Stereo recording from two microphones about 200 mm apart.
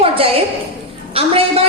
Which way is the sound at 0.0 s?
30° right (ahead or behind).